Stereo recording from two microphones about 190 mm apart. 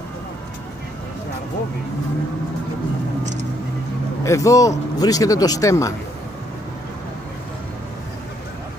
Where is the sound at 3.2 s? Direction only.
40° right (ahead or behind).